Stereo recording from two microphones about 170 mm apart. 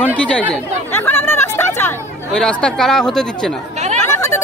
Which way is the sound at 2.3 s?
5° left (ahead or behind).